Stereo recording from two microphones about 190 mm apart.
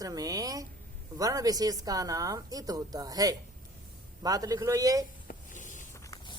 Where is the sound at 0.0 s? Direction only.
20° right (ahead or behind).